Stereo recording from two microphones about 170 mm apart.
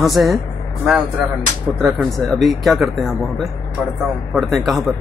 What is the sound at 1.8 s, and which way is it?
Speech, centre (ahead or behind).